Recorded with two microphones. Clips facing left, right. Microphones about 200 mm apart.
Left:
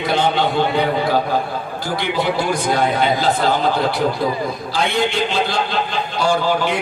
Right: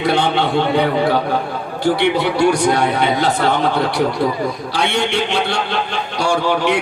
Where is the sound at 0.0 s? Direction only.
75° right (ahead or behind).